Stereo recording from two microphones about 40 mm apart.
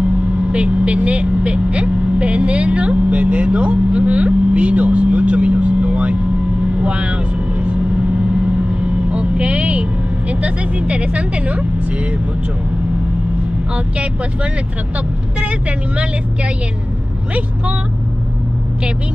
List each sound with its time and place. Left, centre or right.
0.5 s speech: right
7.6 s vehicle: right
10.4 s speech: right